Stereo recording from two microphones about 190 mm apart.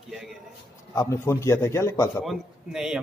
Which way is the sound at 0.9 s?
15° left (ahead or behind).